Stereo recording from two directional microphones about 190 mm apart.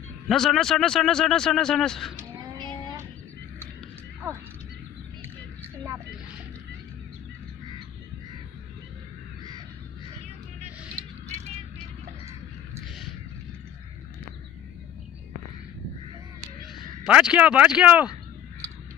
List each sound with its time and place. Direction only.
0.3 s a man's voice: centre (ahead or behind)
2.5 s vehicle: 25° right (ahead or behind)
16.7 s speech: 5° right (ahead or behind)